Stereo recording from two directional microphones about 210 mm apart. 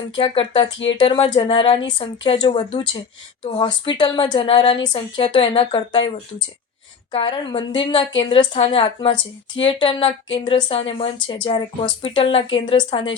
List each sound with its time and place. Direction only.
0.2 s speech: 25° left (ahead or behind)
7.1 s speech: 25° left (ahead or behind)